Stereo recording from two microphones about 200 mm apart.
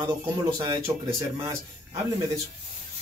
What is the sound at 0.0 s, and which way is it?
Speech, 20° right (ahead or behind).